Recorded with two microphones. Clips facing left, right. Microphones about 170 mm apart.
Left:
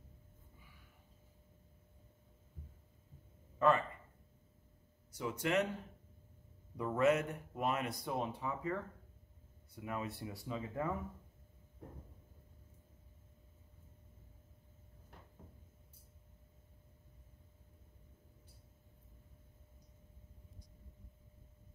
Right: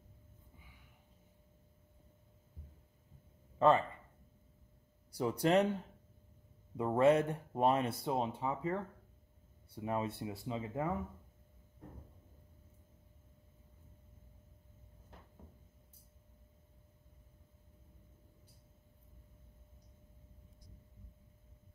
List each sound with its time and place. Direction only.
3.5 s speech: 30° right (ahead or behind)
5.1 s speech: 35° right (ahead or behind)
6.8 s speech: 30° right (ahead or behind)